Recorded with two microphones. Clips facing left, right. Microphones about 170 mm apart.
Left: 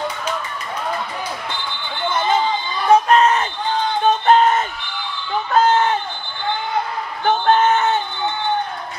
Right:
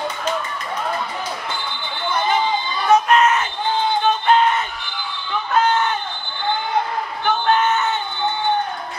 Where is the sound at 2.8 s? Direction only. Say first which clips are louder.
Left 2 dB; 35° left (ahead or behind).